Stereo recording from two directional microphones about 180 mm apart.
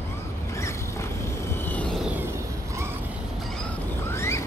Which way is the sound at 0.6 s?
15° left (ahead or behind).